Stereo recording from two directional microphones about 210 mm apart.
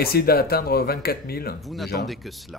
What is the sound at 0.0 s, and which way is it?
Speech, 45° left (ahead or behind).